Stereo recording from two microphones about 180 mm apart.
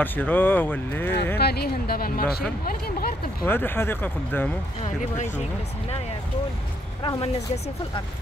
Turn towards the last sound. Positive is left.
turn(degrees=35)  # may be behind; listen again after turning